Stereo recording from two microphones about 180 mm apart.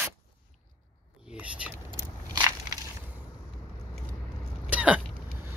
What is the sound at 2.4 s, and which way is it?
Crushing, 20° right (ahead or behind).